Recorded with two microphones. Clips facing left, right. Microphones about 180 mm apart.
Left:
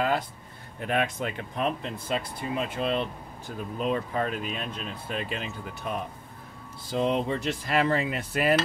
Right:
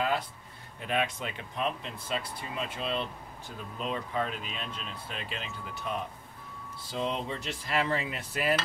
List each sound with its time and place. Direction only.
0.7 s speech: 50° left (ahead or behind)
6.9 s cutlery: 55° left (ahead or behind)